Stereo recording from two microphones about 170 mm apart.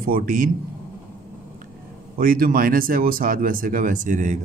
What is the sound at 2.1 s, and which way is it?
A man's voice, 60° right (ahead or behind).